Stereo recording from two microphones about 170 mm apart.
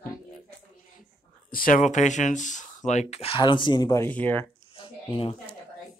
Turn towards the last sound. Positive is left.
turn(degrees=30)  # may be behind; listen again after turning